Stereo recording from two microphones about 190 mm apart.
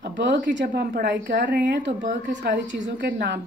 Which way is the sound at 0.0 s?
65° right (ahead or behind).